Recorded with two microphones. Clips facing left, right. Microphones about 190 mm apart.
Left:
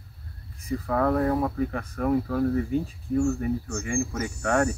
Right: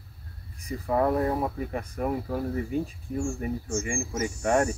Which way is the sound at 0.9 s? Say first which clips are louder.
Left 1 dB; 20° right (ahead or behind).